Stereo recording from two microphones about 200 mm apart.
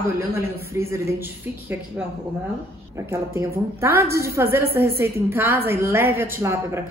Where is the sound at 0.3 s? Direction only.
15° right (ahead or behind).